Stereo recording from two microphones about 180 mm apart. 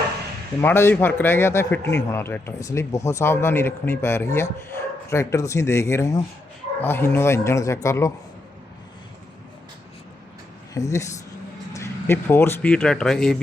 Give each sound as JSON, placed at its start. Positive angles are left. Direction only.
{"t": 0.6, "sound": "a man's voice", "side_deg": 10}
{"t": 10.8, "sound": "a man's voice", "side_deg": 15}